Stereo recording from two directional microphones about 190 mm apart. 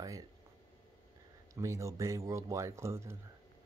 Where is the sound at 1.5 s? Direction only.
15° right (ahead or behind).